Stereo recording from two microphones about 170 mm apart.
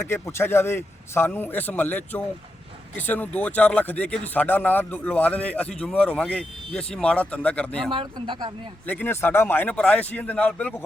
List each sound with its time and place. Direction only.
0.0 s speech: 15° left (ahead or behind)
7.9 s speech: 30° right (ahead or behind)
8.9 s speech: 10° left (ahead or behind)